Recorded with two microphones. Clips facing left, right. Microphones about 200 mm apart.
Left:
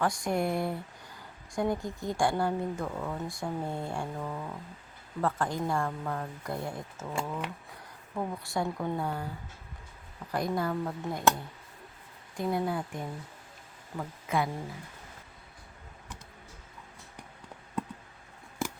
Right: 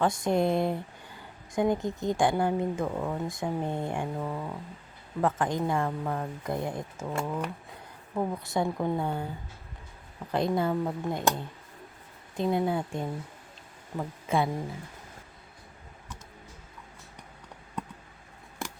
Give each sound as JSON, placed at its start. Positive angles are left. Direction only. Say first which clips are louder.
{"t": 0.0, "sound": "speech", "louder": "right 4 dB", "side_deg": -25}
{"t": 8.1, "sound": "speech", "louder": "right 4 dB", "side_deg": -20}
{"t": 10.3, "sound": "speech", "louder": "right 4 dB", "side_deg": -25}
{"t": 18.6, "sound": "scissors", "louder": "left 4 dB", "side_deg": 0}